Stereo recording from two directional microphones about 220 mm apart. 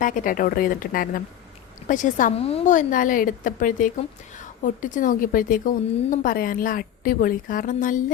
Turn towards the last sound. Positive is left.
turn(degrees=35)  # may be behind; listen again after turning